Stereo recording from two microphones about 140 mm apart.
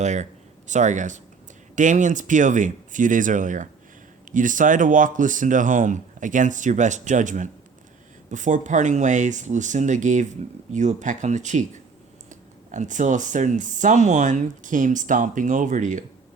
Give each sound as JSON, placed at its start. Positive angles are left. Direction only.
{"t": 0.0, "sound": "speech", "side_deg": -55}